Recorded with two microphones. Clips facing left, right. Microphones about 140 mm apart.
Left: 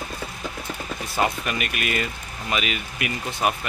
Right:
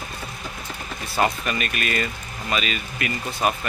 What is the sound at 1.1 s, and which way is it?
Speech, 15° left (ahead or behind).